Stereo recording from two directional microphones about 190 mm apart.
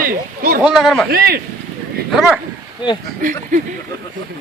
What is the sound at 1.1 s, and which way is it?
Speech, 55° right (ahead or behind).